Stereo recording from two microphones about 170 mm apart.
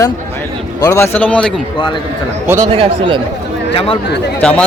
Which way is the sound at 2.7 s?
35° right (ahead or behind).